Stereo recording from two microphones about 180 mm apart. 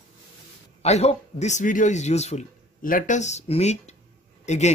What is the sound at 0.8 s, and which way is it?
A man's voice, 35° left (ahead or behind).